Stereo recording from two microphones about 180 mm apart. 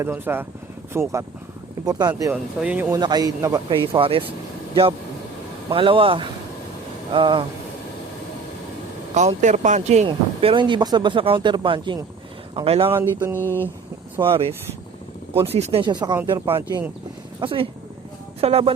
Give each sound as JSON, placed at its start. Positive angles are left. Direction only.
{"t": 0.0, "sound": "mantra", "side_deg": -10}
{"t": 1.8, "sound": "speech", "side_deg": -20}
{"t": 2.3, "sound": "speech", "side_deg": -5}
{"t": 2.9, "sound": "speech", "side_deg": -20}
{"t": 9.1, "sound": "speech", "side_deg": -40}
{"t": 10.1, "sound": "speech", "side_deg": -25}
{"t": 12.9, "sound": "mantra", "side_deg": -15}
{"t": 13.4, "sound": "a sound", "side_deg": 10}
{"t": 14.2, "sound": "speech", "side_deg": -30}
{"t": 17.4, "sound": "speech", "side_deg": -30}